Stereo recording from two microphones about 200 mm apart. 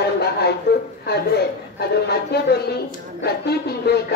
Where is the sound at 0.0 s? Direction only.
55° left (ahead or behind).